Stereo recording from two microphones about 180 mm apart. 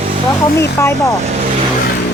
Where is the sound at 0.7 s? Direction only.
15° left (ahead or behind).